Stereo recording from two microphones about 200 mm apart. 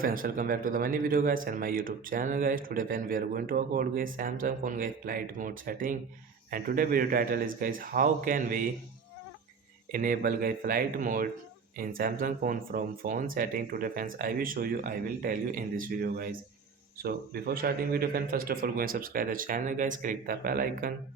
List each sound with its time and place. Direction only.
0.0 s speech: 45° right (ahead or behind)
9.9 s speech: 45° right (ahead or behind)